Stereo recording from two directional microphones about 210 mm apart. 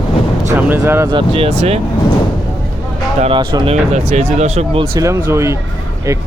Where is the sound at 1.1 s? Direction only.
25° right (ahead or behind).